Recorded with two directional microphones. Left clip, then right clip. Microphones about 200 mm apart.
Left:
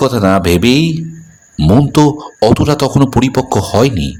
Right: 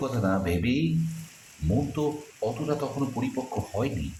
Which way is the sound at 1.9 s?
55° left (ahead or behind).